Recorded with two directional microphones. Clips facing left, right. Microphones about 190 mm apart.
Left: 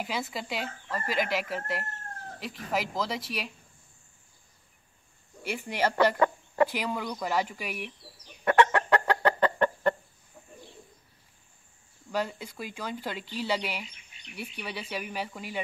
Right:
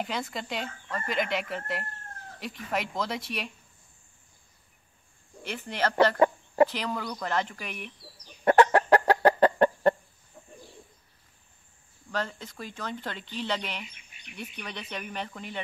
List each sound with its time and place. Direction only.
0.0 s speech: 5° left (ahead or behind)
5.4 s speech: 10° left (ahead or behind)
6.1 s chicken: 25° right (ahead or behind)
6.7 s speech: 10° left (ahead or behind)
8.5 s fowl: 35° right (ahead or behind)
9.4 s chicken: 35° right (ahead or behind)
12.1 s speech: 10° left (ahead or behind)